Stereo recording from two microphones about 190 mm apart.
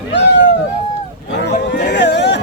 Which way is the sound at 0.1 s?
65° left (ahead or behind).